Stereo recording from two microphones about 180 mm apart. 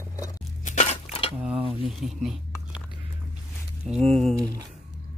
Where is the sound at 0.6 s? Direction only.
40° left (ahead or behind).